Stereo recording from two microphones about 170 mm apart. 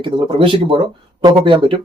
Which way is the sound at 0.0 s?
30° right (ahead or behind).